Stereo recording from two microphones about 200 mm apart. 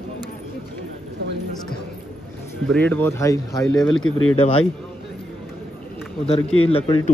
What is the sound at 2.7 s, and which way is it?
Speech, 10° left (ahead or behind).